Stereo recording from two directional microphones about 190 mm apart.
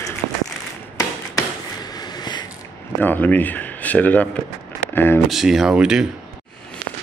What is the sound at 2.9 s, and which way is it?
A man's voice, 10° left (ahead or behind).